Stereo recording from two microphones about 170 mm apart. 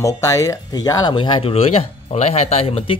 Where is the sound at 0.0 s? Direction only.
20° left (ahead or behind).